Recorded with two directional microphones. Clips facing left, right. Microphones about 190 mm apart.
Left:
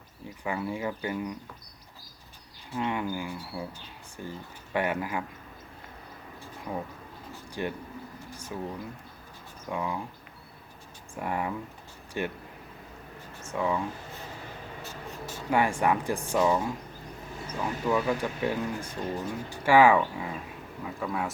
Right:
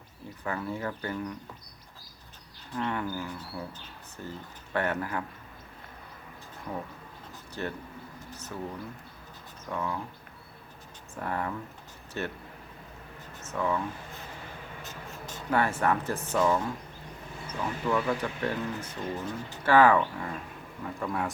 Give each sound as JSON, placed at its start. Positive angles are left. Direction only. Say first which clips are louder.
{"t": 0.4, "sound": "speech", "louder": "left 2 dB", "side_deg": 10}
{"t": 2.7, "sound": "speech", "louder": "left 1 dB", "side_deg": 10}
{"t": 7.6, "sound": "speech", "louder": "left 2 dB", "side_deg": 15}
{"t": 8.3, "sound": "a sound", "louder": "left 1 dB", "side_deg": 10}
{"t": 9.6, "sound": "speech", "louder": "left 1 dB", "side_deg": 10}
{"t": 11.1, "sound": "speech", "louder": "left 2 dB", "side_deg": 10}
{"t": 13.4, "sound": "speech", "louder": "left 1 dB", "side_deg": 10}
{"t": 15.1, "sound": "speech", "louder": "left 1 dB", "side_deg": 10}